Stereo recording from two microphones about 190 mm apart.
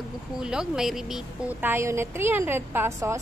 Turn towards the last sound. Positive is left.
turn(degrees=-15)  # may be behind; listen again after turning